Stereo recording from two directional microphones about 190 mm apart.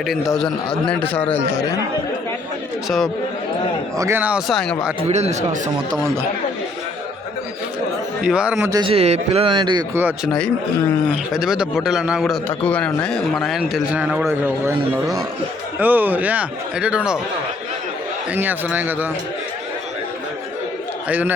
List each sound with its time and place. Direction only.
0.0 s a man's voice: centre (ahead or behind)
3.9 s a man's voice: 15° right (ahead or behind)
5.0 s a man's voice: 35° right (ahead or behind)
5.9 s a man's voice: 15° right (ahead or behind)
8.2 s a man's voice: 5° right (ahead or behind)
8.8 s a man's voice: 30° right (ahead or behind)
9.9 s a man's voice: 10° right (ahead or behind)
11.3 s a man's voice: 5° right (ahead or behind)
15.8 s a man's voice: 10° right (ahead or behind)
18.3 s a man's voice: 10° right (ahead or behind)
21.1 s a man's voice: 10° right (ahead or behind)